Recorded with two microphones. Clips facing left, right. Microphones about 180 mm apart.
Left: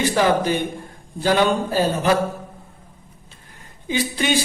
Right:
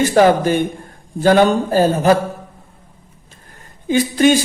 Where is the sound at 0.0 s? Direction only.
50° right (ahead or behind).